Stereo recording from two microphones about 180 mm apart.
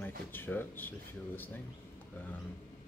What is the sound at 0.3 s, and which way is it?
Speech, 10° left (ahead or behind).